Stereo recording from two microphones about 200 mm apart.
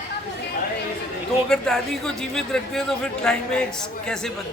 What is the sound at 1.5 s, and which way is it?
Speech, centre (ahead or behind).